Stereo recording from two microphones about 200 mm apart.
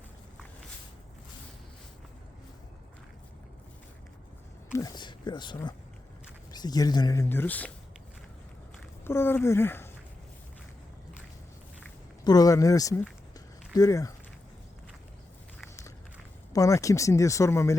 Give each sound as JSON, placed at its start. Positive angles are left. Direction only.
{"t": 4.7, "sound": "speech", "side_deg": 20}
{"t": 9.0, "sound": "speech", "side_deg": 10}
{"t": 12.2, "sound": "speech", "side_deg": 20}
{"t": 16.5, "sound": "speech", "side_deg": 15}